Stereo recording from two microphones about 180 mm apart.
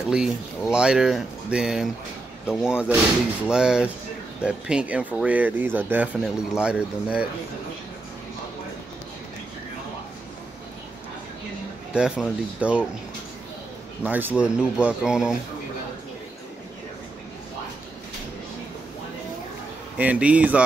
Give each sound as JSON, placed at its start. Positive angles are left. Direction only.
{"t": 0.0, "sound": "speech", "side_deg": -5}
{"t": 11.9, "sound": "speech", "side_deg": -5}
{"t": 14.0, "sound": "speech", "side_deg": -10}
{"t": 20.0, "sound": "speech", "side_deg": -10}